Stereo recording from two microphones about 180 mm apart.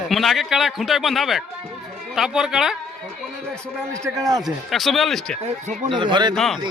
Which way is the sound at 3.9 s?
20° right (ahead or behind).